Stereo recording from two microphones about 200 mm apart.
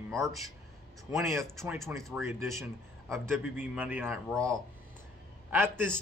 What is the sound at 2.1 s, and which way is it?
Speech, 10° right (ahead or behind).